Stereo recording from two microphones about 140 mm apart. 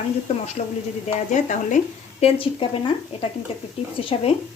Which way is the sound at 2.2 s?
40° left (ahead or behind).